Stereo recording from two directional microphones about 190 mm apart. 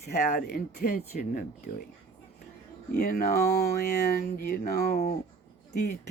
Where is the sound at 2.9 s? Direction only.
50° left (ahead or behind).